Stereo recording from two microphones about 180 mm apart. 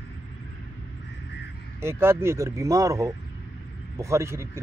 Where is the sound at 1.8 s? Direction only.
15° right (ahead or behind).